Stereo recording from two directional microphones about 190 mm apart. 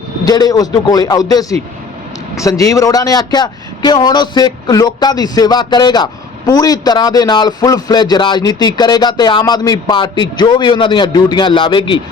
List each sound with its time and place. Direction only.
0.3 s a man's voice: 20° left (ahead or behind)